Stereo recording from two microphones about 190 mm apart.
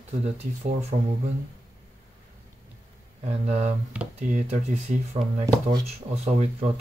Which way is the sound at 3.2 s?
35° right (ahead or behind).